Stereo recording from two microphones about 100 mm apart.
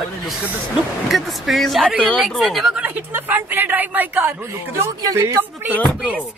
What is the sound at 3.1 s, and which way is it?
A woman's voice, 20° right (ahead or behind).